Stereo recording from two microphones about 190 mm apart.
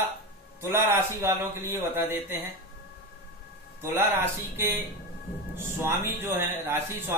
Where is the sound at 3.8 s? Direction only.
10° right (ahead or behind).